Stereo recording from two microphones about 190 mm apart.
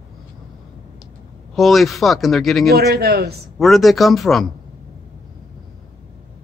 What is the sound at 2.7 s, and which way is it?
Speech, 60° right (ahead or behind).